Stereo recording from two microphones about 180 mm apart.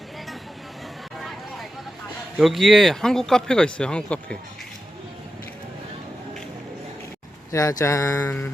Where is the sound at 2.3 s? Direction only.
Centre (ahead or behind).